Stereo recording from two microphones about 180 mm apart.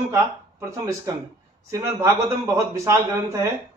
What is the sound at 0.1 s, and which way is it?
Speech, 15° right (ahead or behind).